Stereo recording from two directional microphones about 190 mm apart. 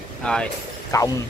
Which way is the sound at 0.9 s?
20° left (ahead or behind).